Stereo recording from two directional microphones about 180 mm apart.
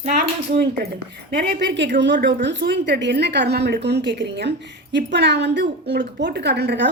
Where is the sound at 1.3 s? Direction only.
65° right (ahead or behind).